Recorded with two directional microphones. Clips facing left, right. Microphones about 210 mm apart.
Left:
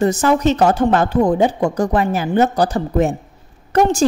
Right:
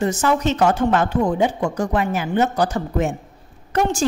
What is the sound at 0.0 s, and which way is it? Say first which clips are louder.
A woman's voice: left 4 dB; 35° left (ahead or behind).